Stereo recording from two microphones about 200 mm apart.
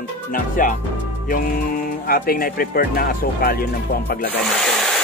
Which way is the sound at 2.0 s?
45° left (ahead or behind).